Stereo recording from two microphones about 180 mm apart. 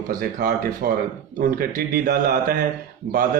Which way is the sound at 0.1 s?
50° right (ahead or behind).